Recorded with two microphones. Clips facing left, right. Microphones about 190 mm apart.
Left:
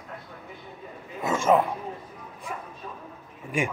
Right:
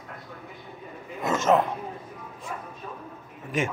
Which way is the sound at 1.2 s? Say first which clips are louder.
Even; 10° left (ahead or behind).